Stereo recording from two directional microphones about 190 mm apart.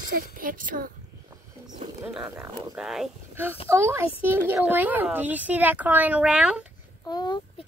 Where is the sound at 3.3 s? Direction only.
10° right (ahead or behind).